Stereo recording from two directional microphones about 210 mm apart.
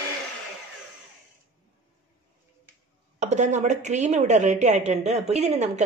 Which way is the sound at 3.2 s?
35° right (ahead or behind).